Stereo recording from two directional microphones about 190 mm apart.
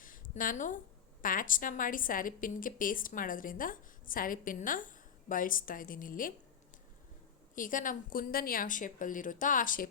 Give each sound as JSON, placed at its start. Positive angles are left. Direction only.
{"t": 0.0, "sound": "a sound", "side_deg": 45}
{"t": 1.2, "sound": "a woman's voice", "side_deg": 45}
{"t": 7.5, "sound": "a woman's voice", "side_deg": 45}